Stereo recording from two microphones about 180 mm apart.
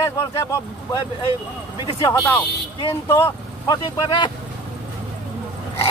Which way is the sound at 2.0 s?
10° left (ahead or behind).